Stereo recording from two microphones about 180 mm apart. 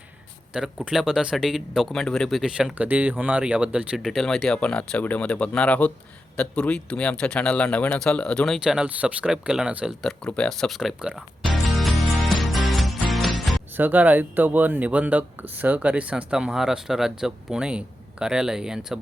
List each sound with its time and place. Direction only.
0.5 s speech: 5° right (ahead or behind)
11.6 s music: centre (ahead or behind)
13.7 s speech: 10° right (ahead or behind)